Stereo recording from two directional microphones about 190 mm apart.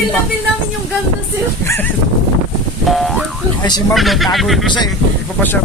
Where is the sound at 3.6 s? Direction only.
20° left (ahead or behind).